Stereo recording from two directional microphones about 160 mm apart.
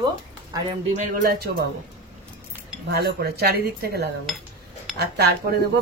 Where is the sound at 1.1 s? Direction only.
70° right (ahead or behind).